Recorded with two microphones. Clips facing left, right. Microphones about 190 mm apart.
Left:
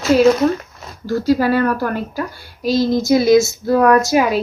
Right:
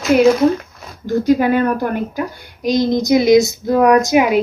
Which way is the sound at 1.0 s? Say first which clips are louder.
Right 2 dB; 15° right (ahead or behind).